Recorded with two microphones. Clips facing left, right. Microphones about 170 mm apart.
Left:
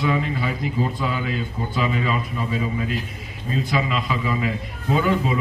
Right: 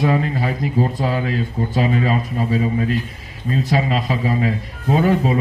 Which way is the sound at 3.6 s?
35° right (ahead or behind).